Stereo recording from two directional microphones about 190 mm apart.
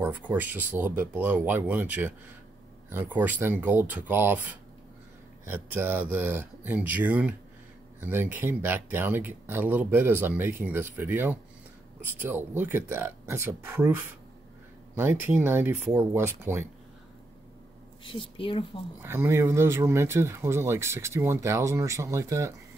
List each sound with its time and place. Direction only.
0.0 s speech: 10° right (ahead or behind)
18.0 s speech: 25° left (ahead or behind)
19.0 s speech: 15° right (ahead or behind)